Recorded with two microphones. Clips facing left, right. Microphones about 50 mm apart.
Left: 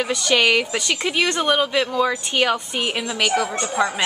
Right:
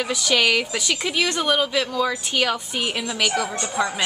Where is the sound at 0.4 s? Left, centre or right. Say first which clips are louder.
Left 2 dB; centre.